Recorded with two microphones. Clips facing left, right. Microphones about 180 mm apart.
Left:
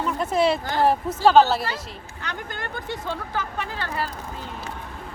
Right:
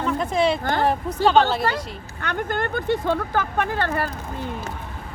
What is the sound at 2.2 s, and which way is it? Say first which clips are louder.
Speech: right 9 dB; 55° right (ahead or behind).